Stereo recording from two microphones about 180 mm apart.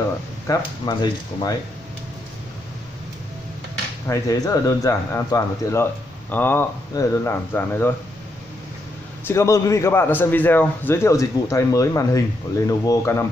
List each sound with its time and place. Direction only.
0.5 s speech: 20° left (ahead or behind)
4.1 s a man's voice: 20° left (ahead or behind)
9.3 s a man's voice: 15° left (ahead or behind)